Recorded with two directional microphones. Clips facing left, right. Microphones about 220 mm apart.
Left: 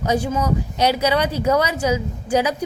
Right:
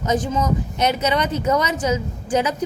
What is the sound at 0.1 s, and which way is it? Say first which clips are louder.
A woman's voice: even; 10° left (ahead or behind).